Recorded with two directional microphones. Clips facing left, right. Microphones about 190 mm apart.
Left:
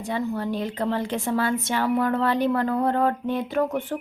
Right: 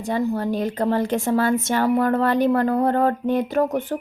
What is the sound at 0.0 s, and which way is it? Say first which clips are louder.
A woman's voice: right 4 dB; 40° right (ahead or behind).